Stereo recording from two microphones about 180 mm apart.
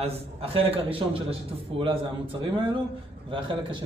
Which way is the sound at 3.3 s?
25° right (ahead or behind).